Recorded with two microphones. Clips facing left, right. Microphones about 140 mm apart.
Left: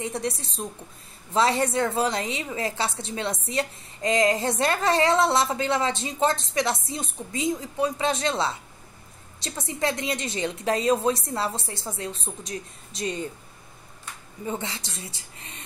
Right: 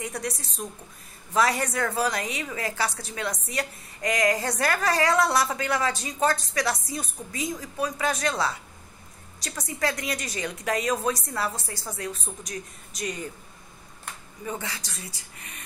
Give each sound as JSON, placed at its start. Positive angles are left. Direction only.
{"t": 0.0, "sound": "a woman's voice", "side_deg": 25}
{"t": 14.4, "sound": "a woman's voice", "side_deg": 25}